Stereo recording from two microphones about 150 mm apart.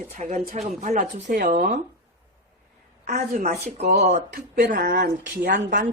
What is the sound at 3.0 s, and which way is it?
Speech, 50° right (ahead or behind).